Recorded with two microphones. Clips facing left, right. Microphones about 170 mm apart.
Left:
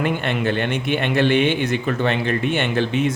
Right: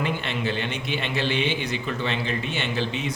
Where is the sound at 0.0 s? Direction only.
55° left (ahead or behind).